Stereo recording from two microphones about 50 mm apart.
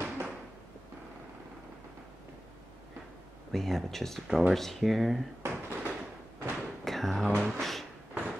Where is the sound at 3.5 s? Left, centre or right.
Centre.